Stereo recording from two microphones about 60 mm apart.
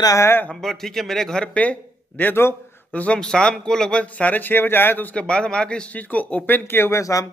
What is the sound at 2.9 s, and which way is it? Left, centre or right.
Speech, centre.